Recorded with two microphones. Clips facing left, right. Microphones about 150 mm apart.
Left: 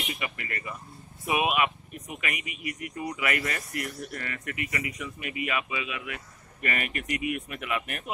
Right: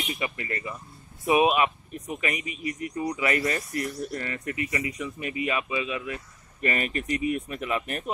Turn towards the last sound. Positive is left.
turn(degrees=-35)  # may be behind; listen again after turning